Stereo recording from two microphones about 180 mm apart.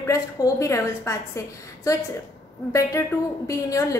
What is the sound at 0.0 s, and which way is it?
A woman's voice, 15° left (ahead or behind).